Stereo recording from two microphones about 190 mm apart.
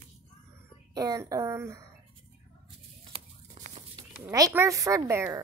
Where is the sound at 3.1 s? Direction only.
40° right (ahead or behind).